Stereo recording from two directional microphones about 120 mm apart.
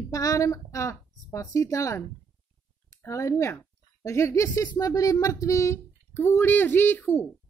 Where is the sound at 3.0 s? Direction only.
25° left (ahead or behind).